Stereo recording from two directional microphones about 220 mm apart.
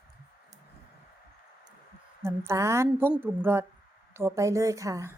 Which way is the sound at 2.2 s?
10° right (ahead or behind).